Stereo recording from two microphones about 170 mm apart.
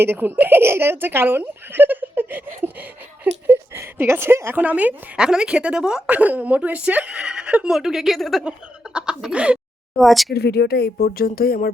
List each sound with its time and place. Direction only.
0.0 s speech: 10° right (ahead or behind)
3.4 s a woman's voice: 10° right (ahead or behind)
10.3 s speech: 70° left (ahead or behind)